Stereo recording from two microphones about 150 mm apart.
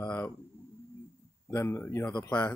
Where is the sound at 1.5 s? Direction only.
15° left (ahead or behind).